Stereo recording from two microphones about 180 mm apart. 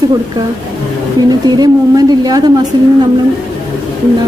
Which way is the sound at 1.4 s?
20° right (ahead or behind).